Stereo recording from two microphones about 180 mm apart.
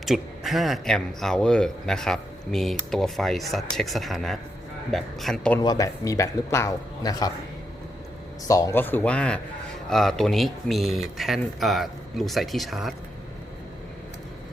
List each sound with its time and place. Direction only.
0.0 s a man's voice: centre (ahead or behind)
5.5 s speech: 20° left (ahead or behind)
8.4 s a man's voice: 20° left (ahead or behind); by 12.9 s centre (ahead or behind)